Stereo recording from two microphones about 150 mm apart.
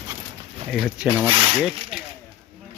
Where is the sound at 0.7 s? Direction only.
5° right (ahead or behind).